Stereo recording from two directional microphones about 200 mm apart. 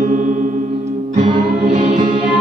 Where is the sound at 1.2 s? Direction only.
25° right (ahead or behind).